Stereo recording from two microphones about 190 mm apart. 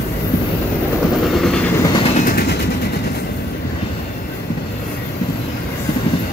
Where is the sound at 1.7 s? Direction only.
25° left (ahead or behind).